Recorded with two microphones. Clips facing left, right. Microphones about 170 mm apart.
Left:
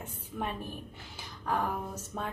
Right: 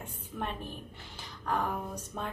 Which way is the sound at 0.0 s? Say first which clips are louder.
Left 1 dB; 10° left (ahead or behind).